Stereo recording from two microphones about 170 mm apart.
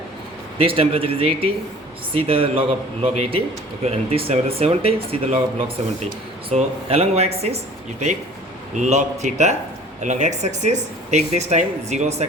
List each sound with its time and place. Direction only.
0.6 s speech: 30° right (ahead or behind)